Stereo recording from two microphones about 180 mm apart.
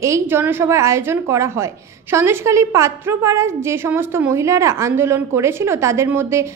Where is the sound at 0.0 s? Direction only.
15° right (ahead or behind).